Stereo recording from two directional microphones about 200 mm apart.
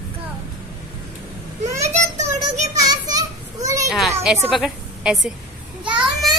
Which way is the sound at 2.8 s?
20° right (ahead or behind).